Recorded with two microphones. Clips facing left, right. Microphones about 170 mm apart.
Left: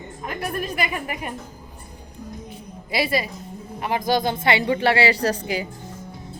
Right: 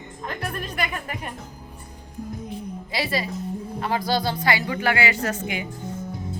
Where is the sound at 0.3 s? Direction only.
10° left (ahead or behind).